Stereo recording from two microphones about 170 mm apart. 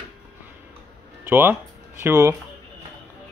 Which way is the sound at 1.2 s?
15° right (ahead or behind).